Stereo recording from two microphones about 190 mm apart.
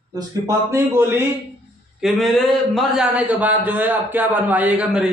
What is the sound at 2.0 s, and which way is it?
A man's voice, centre (ahead or behind).